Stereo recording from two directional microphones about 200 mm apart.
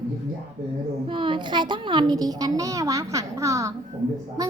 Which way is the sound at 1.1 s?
25° right (ahead or behind).